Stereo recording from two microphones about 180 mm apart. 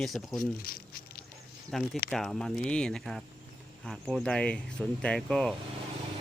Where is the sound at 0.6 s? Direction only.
55° left (ahead or behind).